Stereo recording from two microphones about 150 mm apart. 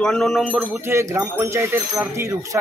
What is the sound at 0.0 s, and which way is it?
Speech, 5° left (ahead or behind).